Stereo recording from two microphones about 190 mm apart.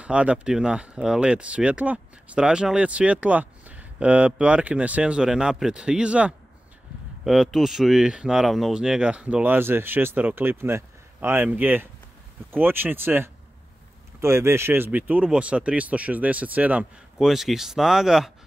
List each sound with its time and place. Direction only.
0.0 s speech: 5° right (ahead or behind)